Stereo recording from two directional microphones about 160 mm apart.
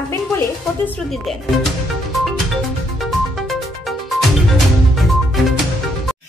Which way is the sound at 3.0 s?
Centre (ahead or behind).